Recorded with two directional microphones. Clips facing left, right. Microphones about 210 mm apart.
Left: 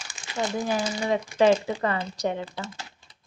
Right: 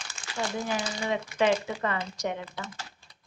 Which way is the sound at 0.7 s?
35° left (ahead or behind).